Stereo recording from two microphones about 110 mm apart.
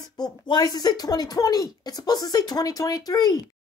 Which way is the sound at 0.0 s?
40° left (ahead or behind).